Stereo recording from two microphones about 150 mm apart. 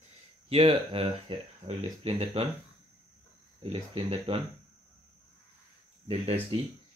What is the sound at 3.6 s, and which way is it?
Speech, 40° right (ahead or behind).